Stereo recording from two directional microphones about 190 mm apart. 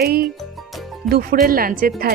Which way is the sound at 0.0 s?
55° right (ahead or behind).